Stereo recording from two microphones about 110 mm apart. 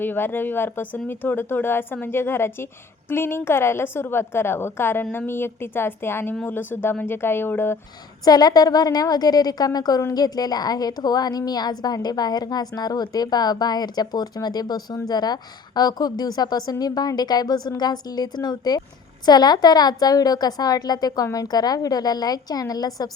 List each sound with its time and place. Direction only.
0.0 s speech: 20° left (ahead or behind)
8.2 s a woman's voice: 35° left (ahead or behind)